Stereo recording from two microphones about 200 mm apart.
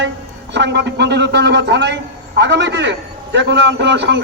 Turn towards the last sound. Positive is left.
turn(degrees=-60)  # may be behind; listen again after turning